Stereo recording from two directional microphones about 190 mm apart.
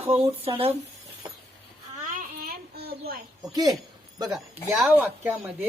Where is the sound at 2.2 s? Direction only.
50° right (ahead or behind).